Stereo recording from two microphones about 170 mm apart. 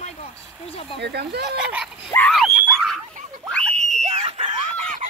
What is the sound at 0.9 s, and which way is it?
Speech, 75° right (ahead or behind).